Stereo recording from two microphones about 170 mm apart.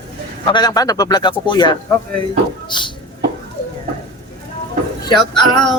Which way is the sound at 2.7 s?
30° left (ahead or behind).